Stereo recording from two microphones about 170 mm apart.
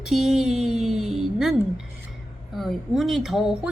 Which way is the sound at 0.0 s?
Centre (ahead or behind).